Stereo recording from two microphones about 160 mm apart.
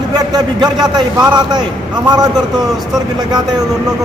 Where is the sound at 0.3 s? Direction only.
25° right (ahead or behind).